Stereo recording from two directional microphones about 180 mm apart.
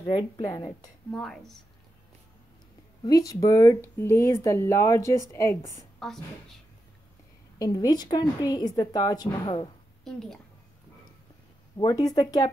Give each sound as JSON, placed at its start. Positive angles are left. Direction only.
{"t": 0.1, "sound": "a woman's voice", "side_deg": 20}
{"t": 1.1, "sound": "a woman's voice", "side_deg": 5}
{"t": 3.1, "sound": "speech", "side_deg": 20}
{"t": 6.0, "sound": "a woman's voice", "side_deg": 0}
{"t": 7.5, "sound": "a woman's voice", "side_deg": 20}
{"t": 10.0, "sound": "a woman's voice", "side_deg": 0}
{"t": 11.7, "sound": "a woman's voice", "side_deg": 20}